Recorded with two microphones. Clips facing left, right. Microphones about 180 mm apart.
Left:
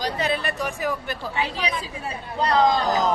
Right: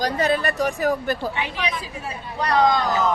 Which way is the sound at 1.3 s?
35° left (ahead or behind).